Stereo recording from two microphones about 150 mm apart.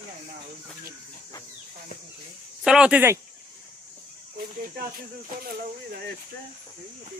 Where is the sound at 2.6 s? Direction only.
5° right (ahead or behind).